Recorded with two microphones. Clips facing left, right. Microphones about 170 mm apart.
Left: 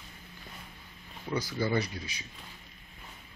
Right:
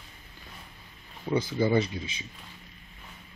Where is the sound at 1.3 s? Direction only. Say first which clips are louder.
Right 5 dB; 25° right (ahead or behind).